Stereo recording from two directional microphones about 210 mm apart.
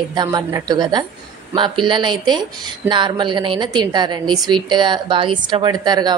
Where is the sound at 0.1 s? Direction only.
20° right (ahead or behind).